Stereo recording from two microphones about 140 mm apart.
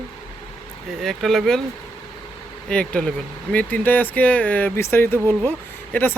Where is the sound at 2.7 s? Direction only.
5° left (ahead or behind).